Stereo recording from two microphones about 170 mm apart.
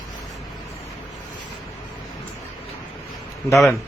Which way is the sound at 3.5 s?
Centre (ahead or behind).